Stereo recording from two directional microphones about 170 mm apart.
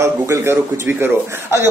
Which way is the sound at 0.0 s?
15° right (ahead or behind).